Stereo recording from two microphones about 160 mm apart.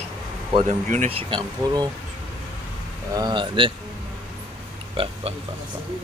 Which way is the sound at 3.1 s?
25° right (ahead or behind).